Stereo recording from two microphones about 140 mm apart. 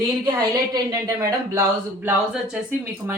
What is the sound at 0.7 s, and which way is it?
Speech, 20° right (ahead or behind).